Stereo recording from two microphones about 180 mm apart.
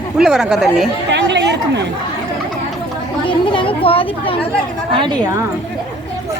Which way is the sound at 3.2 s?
30° left (ahead or behind).